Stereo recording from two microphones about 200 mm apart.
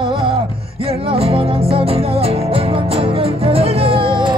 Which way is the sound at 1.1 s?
30° right (ahead or behind).